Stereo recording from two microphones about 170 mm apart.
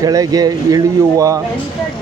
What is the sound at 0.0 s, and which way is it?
Speech, 20° right (ahead or behind).